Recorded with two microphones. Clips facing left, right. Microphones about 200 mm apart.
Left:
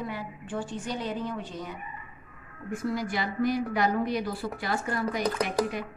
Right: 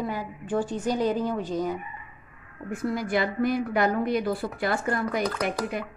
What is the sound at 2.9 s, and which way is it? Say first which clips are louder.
A woman's voice: right 7 dB; 55° right (ahead or behind).